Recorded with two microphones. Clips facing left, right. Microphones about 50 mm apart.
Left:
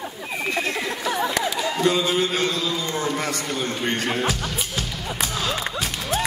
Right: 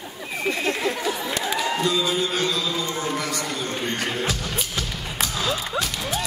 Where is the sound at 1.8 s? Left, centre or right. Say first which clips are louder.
Left 6 dB; left.